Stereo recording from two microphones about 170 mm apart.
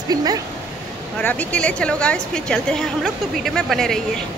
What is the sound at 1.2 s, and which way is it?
A woman's voice, 10° left (ahead or behind).